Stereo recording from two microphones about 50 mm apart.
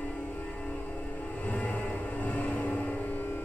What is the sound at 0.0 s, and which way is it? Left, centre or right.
Music, left.